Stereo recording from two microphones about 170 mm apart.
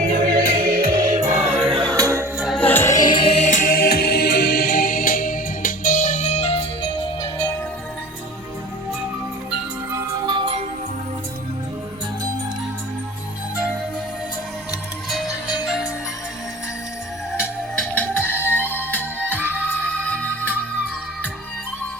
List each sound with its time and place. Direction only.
0.0 s music: 60° right (ahead or behind)
1.3 s music: 40° right (ahead or behind)
1.7 s music: 25° right (ahead or behind)
2.4 s music: centre (ahead or behind)
2.6 s music: 15° left (ahead or behind); by 6.7 s 35° left (ahead or behind)
9.9 s music: 25° right (ahead or behind)
15.1 s music: centre (ahead or behind)
17.4 s music: 5° left (ahead or behind)